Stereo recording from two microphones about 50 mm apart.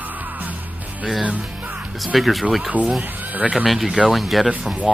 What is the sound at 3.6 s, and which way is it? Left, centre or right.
Speech, centre.